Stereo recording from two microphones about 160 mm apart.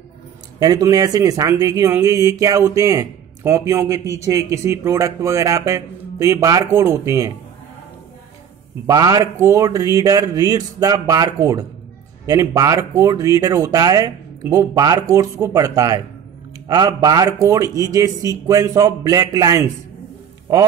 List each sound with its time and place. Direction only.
0.6 s speech: 25° right (ahead or behind)
8.8 s speech: 25° right (ahead or behind)